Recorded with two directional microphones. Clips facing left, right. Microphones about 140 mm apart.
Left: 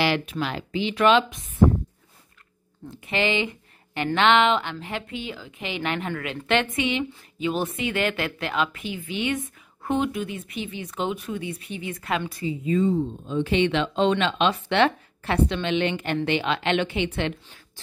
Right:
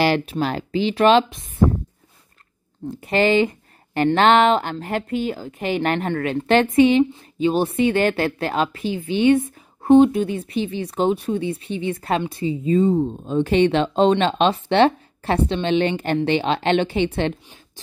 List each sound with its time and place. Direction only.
0.0 s speech: 35° right (ahead or behind)
3.0 s speech: 40° right (ahead or behind)